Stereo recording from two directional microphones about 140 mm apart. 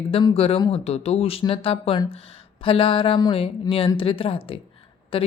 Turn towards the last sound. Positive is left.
turn(degrees=40)  # may be behind; listen again after turning